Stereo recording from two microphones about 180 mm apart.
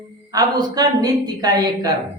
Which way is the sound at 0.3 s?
20° right (ahead or behind).